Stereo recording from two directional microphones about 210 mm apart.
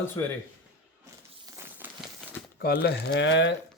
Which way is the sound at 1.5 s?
10° right (ahead or behind).